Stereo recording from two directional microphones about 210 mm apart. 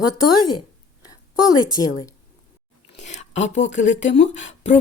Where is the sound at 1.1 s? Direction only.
20° left (ahead or behind).